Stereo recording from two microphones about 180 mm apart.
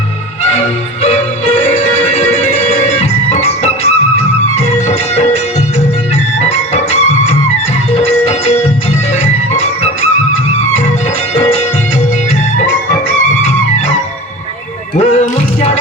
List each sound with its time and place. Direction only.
0.4 s music: 40° left (ahead or behind)
6.4 s music: 35° left (ahead or behind)
13.4 s music: 40° left (ahead or behind)
14.9 s music: 40° left (ahead or behind)